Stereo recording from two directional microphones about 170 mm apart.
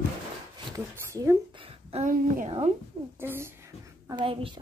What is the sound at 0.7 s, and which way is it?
Speech, 15° right (ahead or behind).